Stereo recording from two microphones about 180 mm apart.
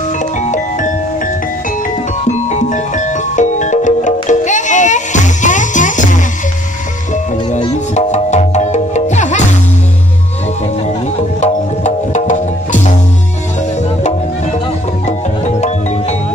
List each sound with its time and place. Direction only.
0.4 s music: 45° left (ahead or behind)
7.5 s music: 40° left (ahead or behind)
11.4 s music: 40° left (ahead or behind)
15.0 s music: 40° left (ahead or behind)